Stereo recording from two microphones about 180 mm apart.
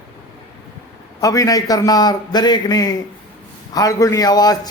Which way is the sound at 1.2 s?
20° left (ahead or behind).